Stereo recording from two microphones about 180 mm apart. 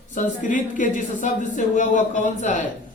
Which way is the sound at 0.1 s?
45° left (ahead or behind).